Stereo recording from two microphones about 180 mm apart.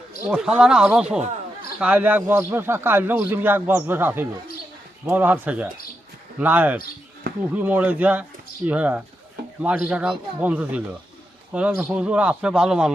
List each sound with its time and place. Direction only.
0.3 s a man's voice: 5° right (ahead or behind)